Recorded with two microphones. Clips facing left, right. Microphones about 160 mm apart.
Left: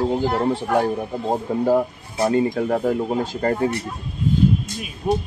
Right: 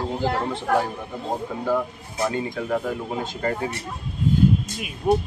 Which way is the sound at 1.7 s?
30° left (ahead or behind).